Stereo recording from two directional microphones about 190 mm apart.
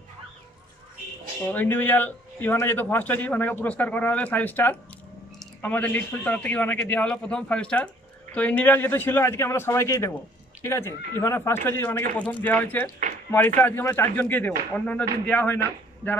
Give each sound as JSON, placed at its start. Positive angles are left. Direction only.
{"t": 1.5, "sound": "a man's voice", "side_deg": 10}